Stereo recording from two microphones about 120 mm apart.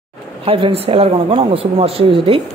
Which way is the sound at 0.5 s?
50° right (ahead or behind).